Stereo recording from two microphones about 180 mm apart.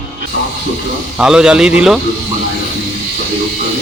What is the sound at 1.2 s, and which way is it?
Speech, 5° right (ahead or behind).